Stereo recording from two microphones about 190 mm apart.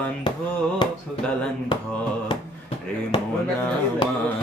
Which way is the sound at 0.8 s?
25° left (ahead or behind).